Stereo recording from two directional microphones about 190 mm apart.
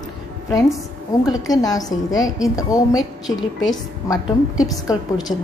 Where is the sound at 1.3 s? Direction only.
20° left (ahead or behind).